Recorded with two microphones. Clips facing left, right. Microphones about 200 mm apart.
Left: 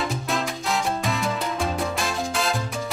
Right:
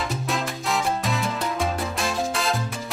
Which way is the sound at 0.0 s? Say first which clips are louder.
Left 1 dB; centre (ahead or behind).